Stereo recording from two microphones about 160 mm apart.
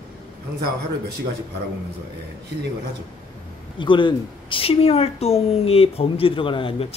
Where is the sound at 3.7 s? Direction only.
30° left (ahead or behind).